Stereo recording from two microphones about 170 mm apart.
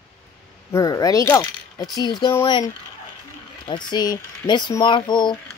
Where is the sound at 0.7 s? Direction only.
20° left (ahead or behind).